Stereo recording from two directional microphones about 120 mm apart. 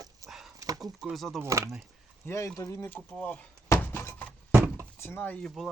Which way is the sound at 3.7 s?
25° left (ahead or behind).